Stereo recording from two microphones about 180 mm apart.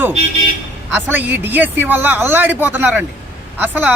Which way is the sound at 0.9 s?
10° right (ahead or behind).